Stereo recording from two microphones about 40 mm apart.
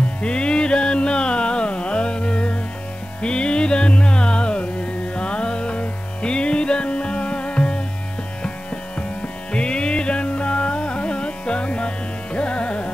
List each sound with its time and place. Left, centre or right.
0.2 s music: left
9.5 s carnatic music: left